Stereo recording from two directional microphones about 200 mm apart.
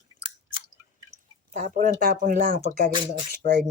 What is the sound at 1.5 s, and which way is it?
Speech, 40° right (ahead or behind).